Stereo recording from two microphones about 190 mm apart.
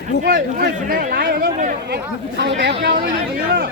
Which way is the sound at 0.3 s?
50° right (ahead or behind).